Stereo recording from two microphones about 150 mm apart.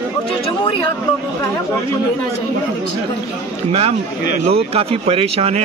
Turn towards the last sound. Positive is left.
turn(degrees=-45)  # may be behind; listen again after turning